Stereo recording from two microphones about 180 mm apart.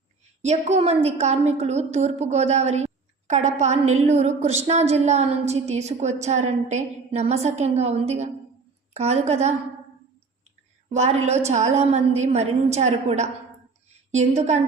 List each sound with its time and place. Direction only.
0.4 s a woman's voice: 40° right (ahead or behind)
10.8 s a woman's voice: 40° right (ahead or behind)